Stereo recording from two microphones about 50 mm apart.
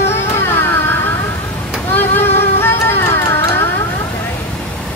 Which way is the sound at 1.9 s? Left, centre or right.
Left.